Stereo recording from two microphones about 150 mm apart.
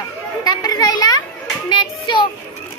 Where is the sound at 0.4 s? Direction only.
25° left (ahead or behind).